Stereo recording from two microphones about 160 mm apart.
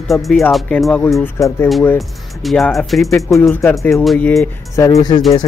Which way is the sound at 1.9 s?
Centre (ahead or behind).